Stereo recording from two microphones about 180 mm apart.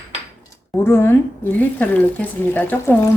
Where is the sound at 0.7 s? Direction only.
15° left (ahead or behind).